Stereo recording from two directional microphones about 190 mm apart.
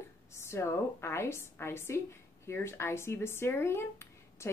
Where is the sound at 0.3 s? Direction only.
15° left (ahead or behind).